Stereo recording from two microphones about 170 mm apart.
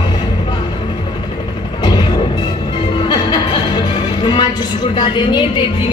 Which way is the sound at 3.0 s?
25° left (ahead or behind).